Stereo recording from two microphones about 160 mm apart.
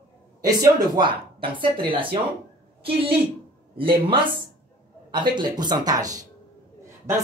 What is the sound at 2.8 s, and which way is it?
A man's voice, 35° right (ahead or behind).